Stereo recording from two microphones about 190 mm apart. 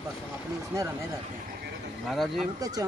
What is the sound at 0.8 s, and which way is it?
Speech, 15° right (ahead or behind).